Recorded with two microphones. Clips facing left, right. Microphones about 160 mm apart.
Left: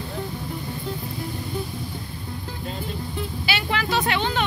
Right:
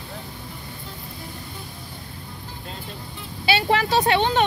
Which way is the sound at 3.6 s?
30° right (ahead or behind).